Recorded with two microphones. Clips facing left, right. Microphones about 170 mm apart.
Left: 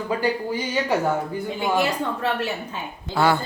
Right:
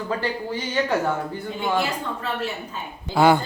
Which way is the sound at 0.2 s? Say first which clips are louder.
Left 3 dB; 10° left (ahead or behind).